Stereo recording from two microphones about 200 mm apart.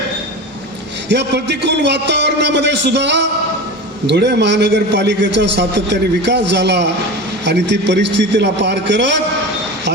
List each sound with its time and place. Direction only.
1.0 s a man's voice: 60° right (ahead or behind)